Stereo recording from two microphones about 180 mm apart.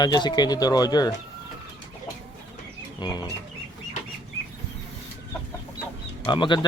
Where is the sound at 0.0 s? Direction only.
25° left (ahead or behind).